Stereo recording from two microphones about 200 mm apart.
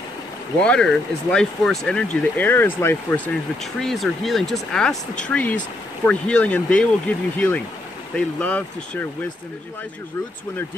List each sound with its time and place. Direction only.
0.6 s speech: 5° left (ahead or behind)
3.8 s speech: centre (ahead or behind)